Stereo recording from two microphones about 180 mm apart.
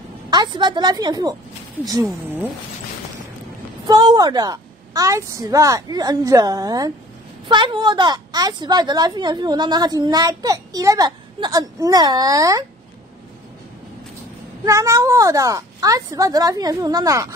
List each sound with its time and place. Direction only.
0.3 s a woman's voice: 25° right (ahead or behind)
3.8 s a woman's voice: 25° right (ahead or behind)
14.6 s a woman's voice: 20° right (ahead or behind)